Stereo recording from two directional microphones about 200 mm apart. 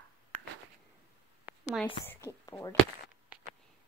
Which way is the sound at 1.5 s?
5° right (ahead or behind).